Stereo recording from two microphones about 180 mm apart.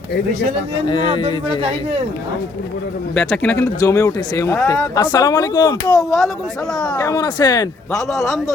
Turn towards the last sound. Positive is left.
turn(degrees=20)  # may be behind; listen again after turning